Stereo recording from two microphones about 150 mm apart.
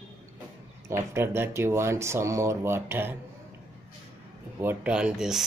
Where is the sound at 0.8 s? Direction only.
20° right (ahead or behind).